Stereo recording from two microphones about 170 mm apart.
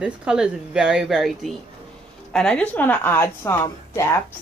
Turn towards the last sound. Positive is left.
turn(degrees=15)  # may be behind; listen again after turning